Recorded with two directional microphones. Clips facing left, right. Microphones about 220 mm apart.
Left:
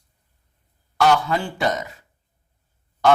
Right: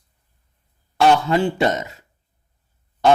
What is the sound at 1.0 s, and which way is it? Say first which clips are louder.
Speech: right 3 dB; 25° right (ahead or behind).